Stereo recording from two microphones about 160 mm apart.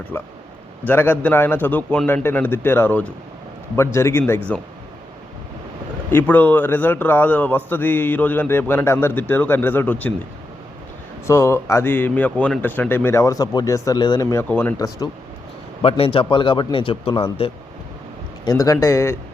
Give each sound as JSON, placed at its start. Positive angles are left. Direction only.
{"t": 0.1, "sound": "a man's voice", "side_deg": 15}
{"t": 6.1, "sound": "a man's voice", "side_deg": 10}
{"t": 11.3, "sound": "a man's voice", "side_deg": 15}
{"t": 15.8, "sound": "speech", "side_deg": 35}
{"t": 18.4, "sound": "speech", "side_deg": 20}